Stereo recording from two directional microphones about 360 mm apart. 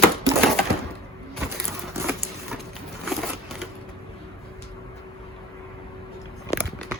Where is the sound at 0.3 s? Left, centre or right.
Centre.